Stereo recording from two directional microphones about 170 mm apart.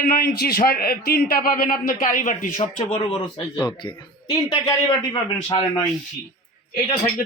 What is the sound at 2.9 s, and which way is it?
A man's voice, 30° left (ahead or behind).